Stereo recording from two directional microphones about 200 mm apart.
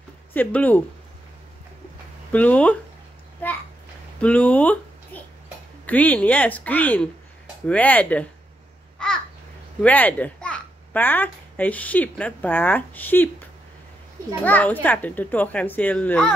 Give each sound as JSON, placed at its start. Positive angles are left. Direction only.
{"t": 0.3, "sound": "a child's voice", "side_deg": 10}
{"t": 2.3, "sound": "a child's voice", "side_deg": 10}
{"t": 9.0, "sound": "babbling", "side_deg": 5}
{"t": 9.8, "sound": "a child's voice", "side_deg": 10}
{"t": 14.4, "sound": "a child's voice", "side_deg": 10}